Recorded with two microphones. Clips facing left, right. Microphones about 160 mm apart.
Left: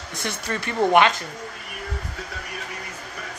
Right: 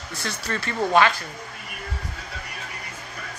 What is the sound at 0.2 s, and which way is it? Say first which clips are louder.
Speech: left 1 dB; 20° left (ahead or behind).